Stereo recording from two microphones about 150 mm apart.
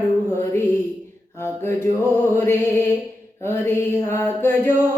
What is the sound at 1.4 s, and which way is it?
Mantra, 15° left (ahead or behind).